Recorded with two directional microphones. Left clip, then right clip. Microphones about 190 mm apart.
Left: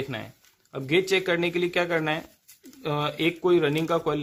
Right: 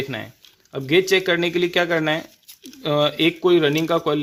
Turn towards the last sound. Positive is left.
turn(degrees=-15)  # may be behind; listen again after turning